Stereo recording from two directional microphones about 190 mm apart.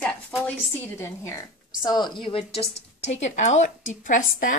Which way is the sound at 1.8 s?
25° left (ahead or behind).